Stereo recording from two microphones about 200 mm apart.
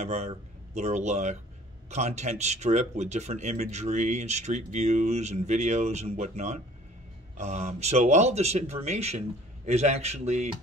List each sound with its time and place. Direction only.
0.0 s speech: 35° right (ahead or behind)